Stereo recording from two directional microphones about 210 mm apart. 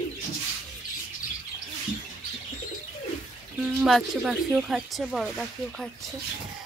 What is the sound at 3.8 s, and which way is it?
Speech, centre (ahead or behind).